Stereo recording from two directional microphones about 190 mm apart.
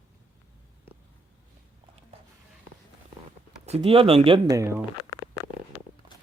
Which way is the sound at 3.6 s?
30° right (ahead or behind).